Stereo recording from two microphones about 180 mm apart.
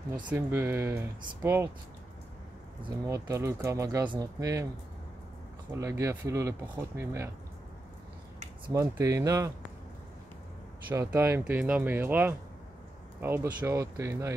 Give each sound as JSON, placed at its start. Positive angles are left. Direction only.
{"t": 0.3, "sound": "speech", "side_deg": -15}
{"t": 3.1, "sound": "speech", "side_deg": -20}
{"t": 5.7, "sound": "speech", "side_deg": -20}
{"t": 8.6, "sound": "speech", "side_deg": -20}
{"t": 10.9, "sound": "speech", "side_deg": -10}